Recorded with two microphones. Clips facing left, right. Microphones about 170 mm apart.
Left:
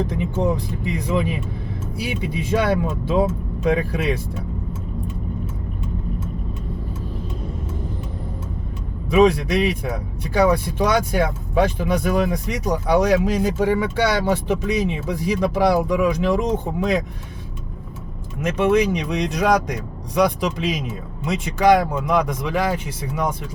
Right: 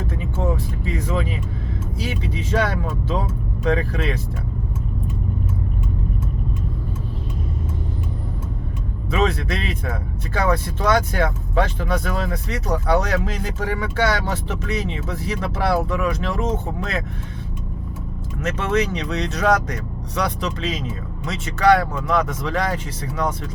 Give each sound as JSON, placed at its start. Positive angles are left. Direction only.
{"t": 0.1, "sound": "speech", "side_deg": 15}
{"t": 9.0, "sound": "speech", "side_deg": 15}
{"t": 18.3, "sound": "speech", "side_deg": 10}